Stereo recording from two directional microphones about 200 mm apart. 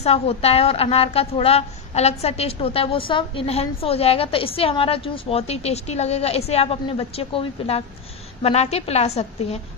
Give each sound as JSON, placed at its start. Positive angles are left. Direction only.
{"t": 0.0, "sound": "a woman's voice", "side_deg": 30}